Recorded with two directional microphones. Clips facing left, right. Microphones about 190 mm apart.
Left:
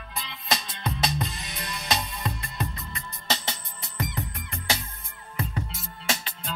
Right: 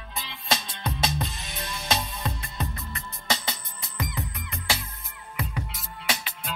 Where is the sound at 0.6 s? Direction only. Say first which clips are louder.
Even; centre (ahead or behind).